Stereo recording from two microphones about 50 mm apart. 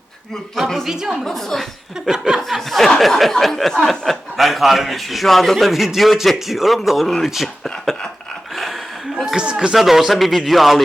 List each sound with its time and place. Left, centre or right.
0.5 s speech: centre
0.9 s chuckle: centre
1.2 s a woman's voice: centre
2.0 s chuckle: centre
2.6 s speech: centre
8.5 s chuckle: centre
9.3 s chuckle: centre
9.7 s speech: centre